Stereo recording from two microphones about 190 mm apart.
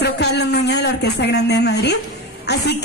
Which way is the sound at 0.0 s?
60° left (ahead or behind).